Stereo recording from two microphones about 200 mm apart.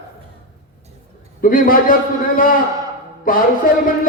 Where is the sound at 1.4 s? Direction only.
45° left (ahead or behind).